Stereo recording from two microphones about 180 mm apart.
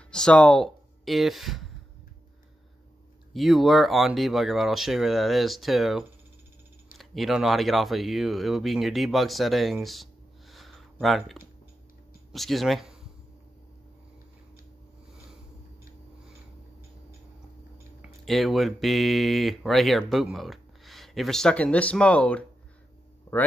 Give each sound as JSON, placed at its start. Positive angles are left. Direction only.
{"t": 0.1, "sound": "speech", "side_deg": 5}
{"t": 3.3, "sound": "speech", "side_deg": 0}
{"t": 10.5, "sound": "a sound", "side_deg": 0}
{"t": 12.3, "sound": "speech", "side_deg": 0}
{"t": 18.2, "sound": "speech", "side_deg": 0}